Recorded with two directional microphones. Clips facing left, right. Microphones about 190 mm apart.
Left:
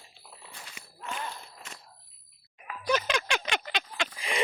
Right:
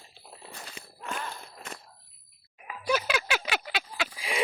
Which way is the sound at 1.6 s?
55° right (ahead or behind).